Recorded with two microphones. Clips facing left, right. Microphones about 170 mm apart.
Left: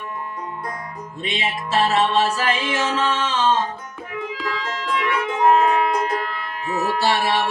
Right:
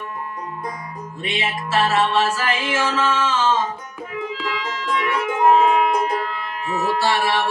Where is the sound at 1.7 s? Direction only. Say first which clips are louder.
Even; 20° left (ahead or behind).